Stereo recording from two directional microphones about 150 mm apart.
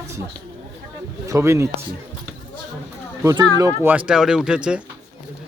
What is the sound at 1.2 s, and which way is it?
Speech, 20° right (ahead or behind).